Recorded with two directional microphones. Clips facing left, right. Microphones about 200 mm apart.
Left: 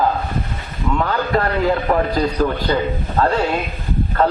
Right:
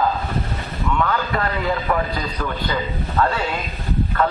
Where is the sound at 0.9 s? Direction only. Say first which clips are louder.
Left 1 dB; 35° left (ahead or behind).